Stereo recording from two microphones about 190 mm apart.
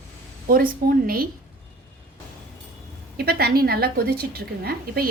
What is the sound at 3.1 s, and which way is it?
A woman's voice, 55° right (ahead or behind).